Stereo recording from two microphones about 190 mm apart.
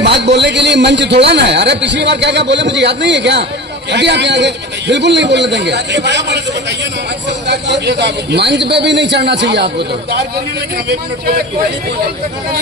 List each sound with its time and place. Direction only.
0.0 s a man's voice: 65° right (ahead or behind)
7.4 s a man's voice: 65° right (ahead or behind)